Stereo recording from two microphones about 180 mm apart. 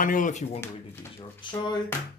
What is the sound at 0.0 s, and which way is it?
Speech, 45° left (ahead or behind).